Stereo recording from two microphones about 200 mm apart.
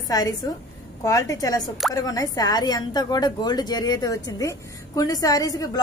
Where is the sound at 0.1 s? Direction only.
20° left (ahead or behind).